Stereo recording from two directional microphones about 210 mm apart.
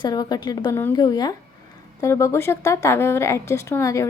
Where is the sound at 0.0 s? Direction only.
20° left (ahead or behind).